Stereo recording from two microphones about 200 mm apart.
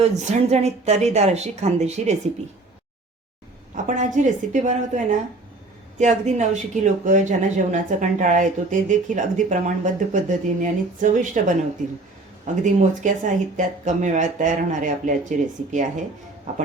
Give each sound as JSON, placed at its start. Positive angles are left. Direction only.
{"t": 0.0, "sound": "speech", "side_deg": -30}
{"t": 3.8, "sound": "speech", "side_deg": -40}
{"t": 12.6, "sound": "speech", "side_deg": -40}